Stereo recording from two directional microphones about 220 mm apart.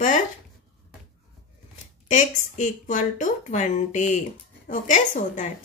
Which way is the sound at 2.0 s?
35° left (ahead or behind).